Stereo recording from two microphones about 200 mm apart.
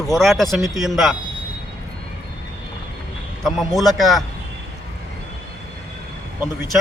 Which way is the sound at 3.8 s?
Centre (ahead or behind).